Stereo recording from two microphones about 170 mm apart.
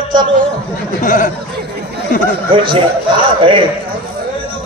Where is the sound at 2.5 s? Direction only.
30° right (ahead or behind).